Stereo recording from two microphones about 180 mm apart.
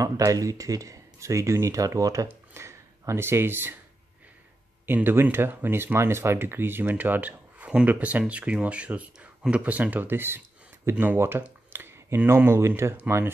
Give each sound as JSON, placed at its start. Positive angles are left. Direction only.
{"t": 0.0, "sound": "speech", "side_deg": -20}
{"t": 4.8, "sound": "speech", "side_deg": -10}